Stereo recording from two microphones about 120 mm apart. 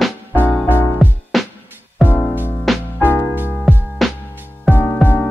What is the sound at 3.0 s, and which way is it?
Music, 15° left (ahead or behind).